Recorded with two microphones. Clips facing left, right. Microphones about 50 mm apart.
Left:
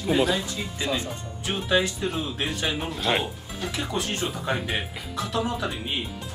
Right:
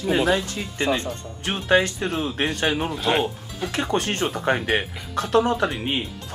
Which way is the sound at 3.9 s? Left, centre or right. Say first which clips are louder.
Right 6 dB; right.